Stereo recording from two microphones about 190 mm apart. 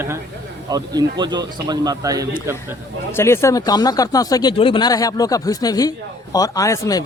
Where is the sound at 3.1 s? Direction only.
15° left (ahead or behind).